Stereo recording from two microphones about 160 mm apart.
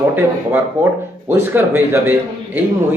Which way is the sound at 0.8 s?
15° right (ahead or behind).